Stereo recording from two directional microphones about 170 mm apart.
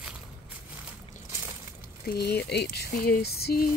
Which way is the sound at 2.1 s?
75° left (ahead or behind).